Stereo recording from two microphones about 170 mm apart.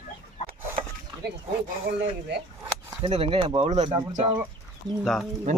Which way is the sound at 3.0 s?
35° right (ahead or behind).